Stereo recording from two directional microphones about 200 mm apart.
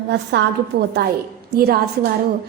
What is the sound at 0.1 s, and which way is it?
Speech, 60° right (ahead or behind).